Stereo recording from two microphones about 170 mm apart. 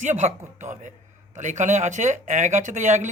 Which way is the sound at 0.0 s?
45° right (ahead or behind).